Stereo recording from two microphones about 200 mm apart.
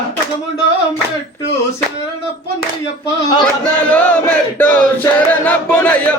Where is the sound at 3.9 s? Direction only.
5° left (ahead or behind).